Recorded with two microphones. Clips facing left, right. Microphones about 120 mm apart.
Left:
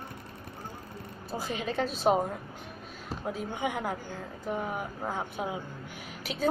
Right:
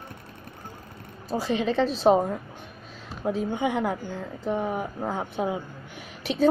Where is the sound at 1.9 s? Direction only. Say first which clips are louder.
Right 5 dB; 25° right (ahead or behind).